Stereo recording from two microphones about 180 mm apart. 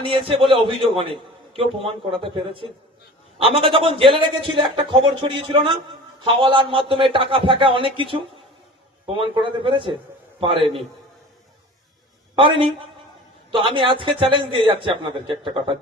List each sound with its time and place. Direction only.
0.0 s a man's voice: 30° right (ahead or behind)
12.4 s a man's voice: 30° right (ahead or behind)